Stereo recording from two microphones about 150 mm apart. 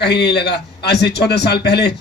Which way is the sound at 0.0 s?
90° left.